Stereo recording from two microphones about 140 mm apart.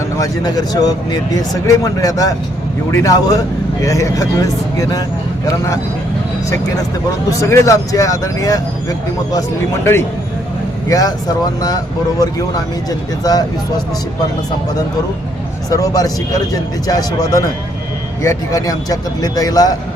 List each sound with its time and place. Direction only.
0.2 s speech: 25° left (ahead or behind)
7.3 s speech: 20° left (ahead or behind)
10.8 s speech: 25° left (ahead or behind)
15.7 s speech: 25° left (ahead or behind)